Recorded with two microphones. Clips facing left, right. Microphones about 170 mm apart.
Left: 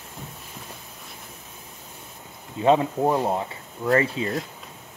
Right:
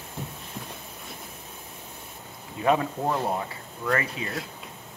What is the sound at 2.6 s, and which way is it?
Speech, 25° left (ahead or behind).